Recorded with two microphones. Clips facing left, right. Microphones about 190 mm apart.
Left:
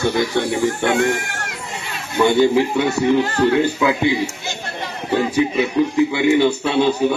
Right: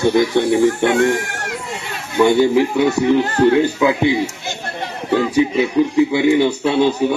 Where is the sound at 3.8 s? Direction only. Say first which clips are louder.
Right 2 dB; 20° right (ahead or behind).